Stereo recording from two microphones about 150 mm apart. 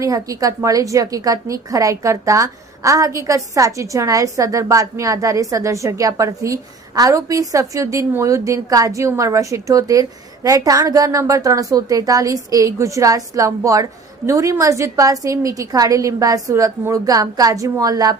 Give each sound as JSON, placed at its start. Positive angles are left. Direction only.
{"t": 0.0, "sound": "a woman's voice", "side_deg": -25}